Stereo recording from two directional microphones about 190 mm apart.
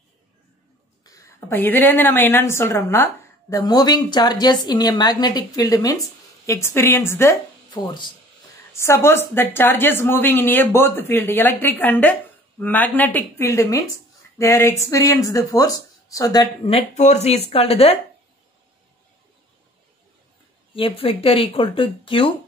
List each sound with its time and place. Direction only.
1.0 s a woman's voice: 15° left (ahead or behind)
7.7 s speech: 25° left (ahead or behind)
8.7 s a woman's voice: 15° left (ahead or behind)
16.7 s speech: 35° left (ahead or behind)
20.7 s speech: 30° left (ahead or behind)